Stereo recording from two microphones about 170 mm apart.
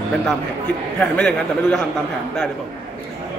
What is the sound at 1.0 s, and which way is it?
Speech, 5° left (ahead or behind).